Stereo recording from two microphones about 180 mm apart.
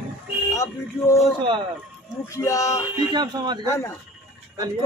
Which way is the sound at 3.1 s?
25° right (ahead or behind).